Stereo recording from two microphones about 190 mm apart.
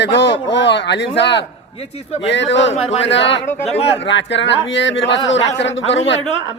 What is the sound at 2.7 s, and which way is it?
Speech, 35° left (ahead or behind).